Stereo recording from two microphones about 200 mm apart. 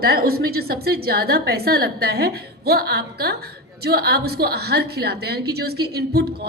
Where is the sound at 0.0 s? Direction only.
50° right (ahead or behind).